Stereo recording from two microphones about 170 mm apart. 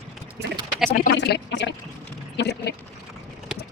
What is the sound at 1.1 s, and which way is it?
Speech, 90° left.